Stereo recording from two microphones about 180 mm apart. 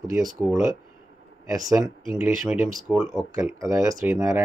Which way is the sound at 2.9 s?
5° right (ahead or behind).